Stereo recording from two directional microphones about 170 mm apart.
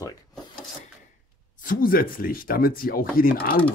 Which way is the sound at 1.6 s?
55° left (ahead or behind).